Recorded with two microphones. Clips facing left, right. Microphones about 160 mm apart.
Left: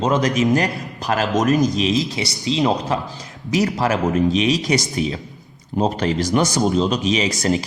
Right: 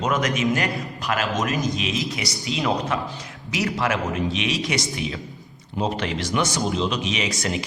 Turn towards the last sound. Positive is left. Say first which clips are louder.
# left 7 dB
turn(degrees=35)  # may be behind; listen again after turning